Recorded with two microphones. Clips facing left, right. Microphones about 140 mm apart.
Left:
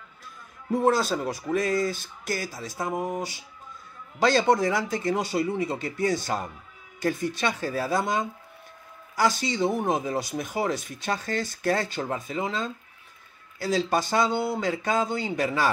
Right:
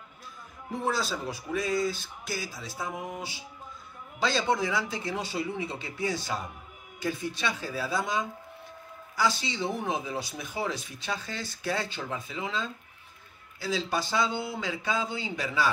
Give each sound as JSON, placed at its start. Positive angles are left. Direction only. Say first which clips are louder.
{"t": 0.8, "sound": "speech", "louder": "left 6 dB", "side_deg": 50}
{"t": 2.8, "sound": "speech", "louder": "left 7 dB", "side_deg": 40}
{"t": 9.2, "sound": "speech", "louder": "left 5 dB", "side_deg": 45}